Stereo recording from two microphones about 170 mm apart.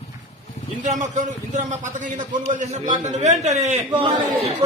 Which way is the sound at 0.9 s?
45° right (ahead or behind).